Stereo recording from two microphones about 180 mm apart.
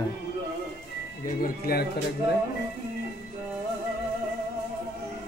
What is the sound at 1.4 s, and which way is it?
Speech, 55° left (ahead or behind).